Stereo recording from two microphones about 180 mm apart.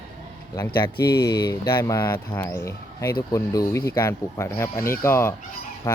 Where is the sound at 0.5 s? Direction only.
20° left (ahead or behind).